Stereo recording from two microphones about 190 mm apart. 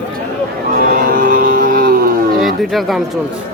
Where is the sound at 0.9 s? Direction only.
50° right (ahead or behind).